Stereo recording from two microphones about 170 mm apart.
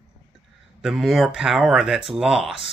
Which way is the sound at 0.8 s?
Centre (ahead or behind).